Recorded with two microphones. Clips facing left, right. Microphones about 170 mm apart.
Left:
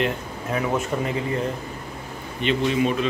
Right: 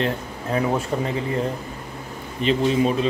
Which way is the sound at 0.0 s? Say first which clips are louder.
Even; 35° right (ahead or behind).